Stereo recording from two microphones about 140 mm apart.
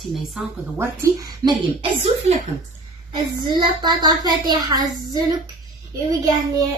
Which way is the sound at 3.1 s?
35° right (ahead or behind).